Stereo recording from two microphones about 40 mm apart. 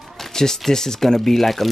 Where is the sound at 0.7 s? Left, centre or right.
Centre.